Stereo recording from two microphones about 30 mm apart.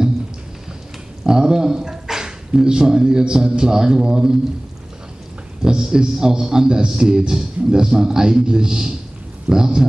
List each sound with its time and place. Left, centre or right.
1.2 s speech: right
5.6 s a man's voice: right